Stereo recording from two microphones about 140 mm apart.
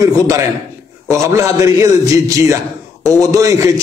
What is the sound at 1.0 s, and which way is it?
A man's voice, 20° right (ahead or behind).